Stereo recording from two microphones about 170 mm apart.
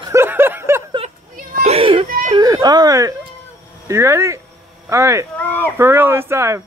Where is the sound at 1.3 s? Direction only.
40° right (ahead or behind).